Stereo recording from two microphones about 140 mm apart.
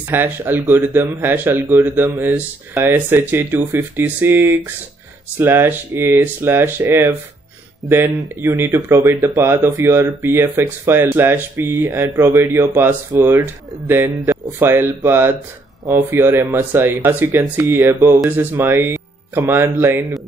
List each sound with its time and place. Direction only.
0.1 s speech: 15° right (ahead or behind)